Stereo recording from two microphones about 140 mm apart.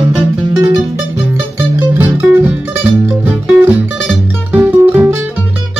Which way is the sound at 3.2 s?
10° right (ahead or behind).